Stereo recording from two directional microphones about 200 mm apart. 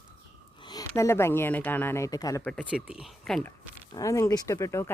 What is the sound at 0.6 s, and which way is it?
Speech, 20° left (ahead or behind).